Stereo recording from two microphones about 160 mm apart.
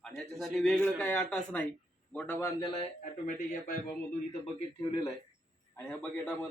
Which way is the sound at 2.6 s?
35° left (ahead or behind).